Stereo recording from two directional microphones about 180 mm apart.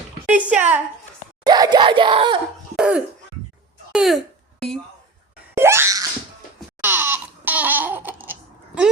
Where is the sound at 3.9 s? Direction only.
5° right (ahead or behind).